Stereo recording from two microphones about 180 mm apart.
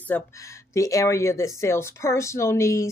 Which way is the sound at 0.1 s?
10° left (ahead or behind).